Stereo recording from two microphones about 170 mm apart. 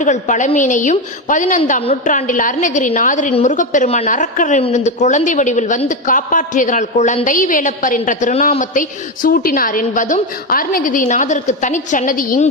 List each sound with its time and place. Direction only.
0.0 s a woman's voice: 45° left (ahead or behind)